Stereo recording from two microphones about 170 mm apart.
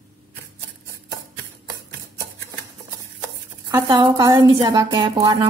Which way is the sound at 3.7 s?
20° right (ahead or behind).